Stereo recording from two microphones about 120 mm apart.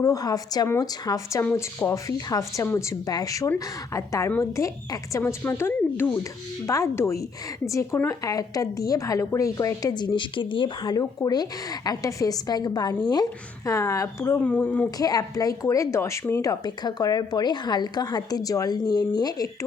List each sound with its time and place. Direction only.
0.0 s a woman's voice: 30° left (ahead or behind)
14.4 s speech: 15° left (ahead or behind)
14.8 s a woman's voice: 30° left (ahead or behind)